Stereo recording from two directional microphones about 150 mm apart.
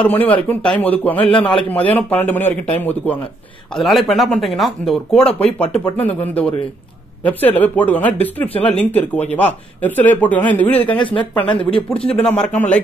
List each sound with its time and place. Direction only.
0.0 s speech: 10° left (ahead or behind)
3.7 s speech: centre (ahead or behind)
11.0 s speech: 35° left (ahead or behind)
12.2 s speech: 10° left (ahead or behind)